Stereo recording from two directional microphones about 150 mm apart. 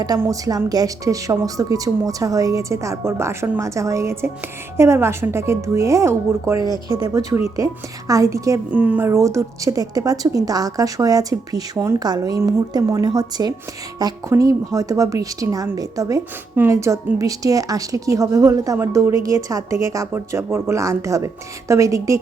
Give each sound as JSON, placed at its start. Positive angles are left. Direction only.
{"t": 0.2, "sound": "speech", "side_deg": -25}